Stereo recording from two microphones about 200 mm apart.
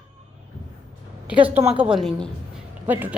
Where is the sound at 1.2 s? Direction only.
5° right (ahead or behind).